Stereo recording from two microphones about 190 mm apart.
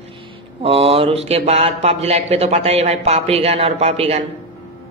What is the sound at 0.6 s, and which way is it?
Speech, 30° right (ahead or behind).